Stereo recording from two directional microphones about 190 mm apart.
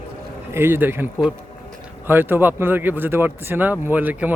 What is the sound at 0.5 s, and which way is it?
Speech, 10° right (ahead or behind).